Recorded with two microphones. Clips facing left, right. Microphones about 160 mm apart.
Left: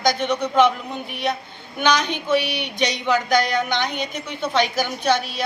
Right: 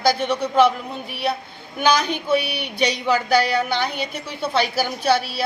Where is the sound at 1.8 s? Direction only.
10° right (ahead or behind).